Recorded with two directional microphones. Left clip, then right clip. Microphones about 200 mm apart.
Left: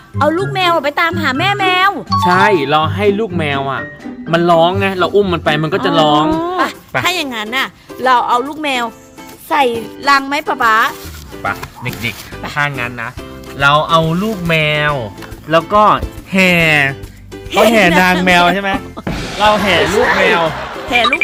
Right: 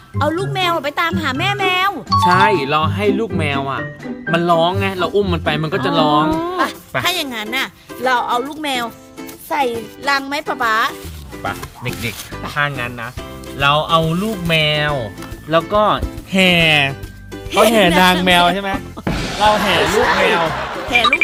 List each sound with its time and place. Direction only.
0.2 s speech: centre (ahead or behind)
12.5 s speech: 15° right (ahead or behind)
13.6 s speech: 5° left (ahead or behind)
18.0 s speech: 15° right (ahead or behind); by 21.2 s centre (ahead or behind)